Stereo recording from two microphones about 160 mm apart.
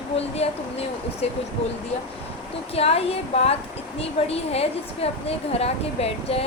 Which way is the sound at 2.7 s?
40° left (ahead or behind).